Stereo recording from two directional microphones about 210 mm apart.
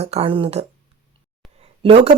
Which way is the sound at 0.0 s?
30° right (ahead or behind).